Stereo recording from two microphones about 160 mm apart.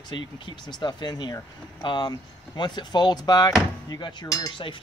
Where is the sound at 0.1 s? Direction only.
30° left (ahead or behind).